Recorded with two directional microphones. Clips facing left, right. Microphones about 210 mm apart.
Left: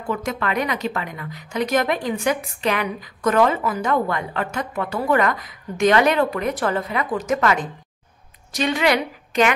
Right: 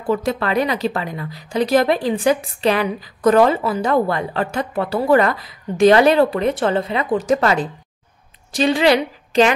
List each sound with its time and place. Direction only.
0.0 s a woman's voice: 35° right (ahead or behind)